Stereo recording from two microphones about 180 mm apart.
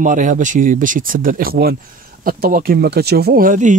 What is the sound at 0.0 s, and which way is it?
Speech, 45° right (ahead or behind).